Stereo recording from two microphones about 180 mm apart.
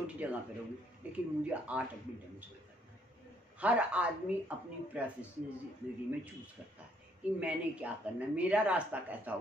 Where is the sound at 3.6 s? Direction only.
5° right (ahead or behind).